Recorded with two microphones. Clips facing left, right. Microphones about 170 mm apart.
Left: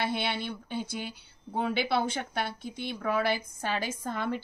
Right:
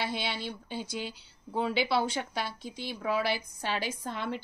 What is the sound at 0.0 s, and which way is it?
A woman's voice, 55° left (ahead or behind).